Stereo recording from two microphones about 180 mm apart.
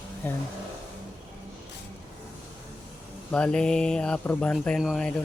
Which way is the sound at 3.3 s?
5° left (ahead or behind).